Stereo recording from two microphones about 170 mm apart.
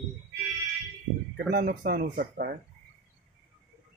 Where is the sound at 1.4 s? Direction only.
65° right (ahead or behind).